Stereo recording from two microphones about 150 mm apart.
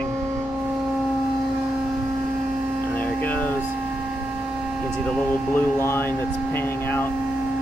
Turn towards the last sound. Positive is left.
turn(degrees=15)  # may be behind; listen again after turning